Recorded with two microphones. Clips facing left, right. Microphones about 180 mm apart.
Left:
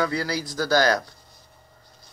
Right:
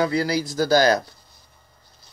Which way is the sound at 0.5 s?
10° right (ahead or behind).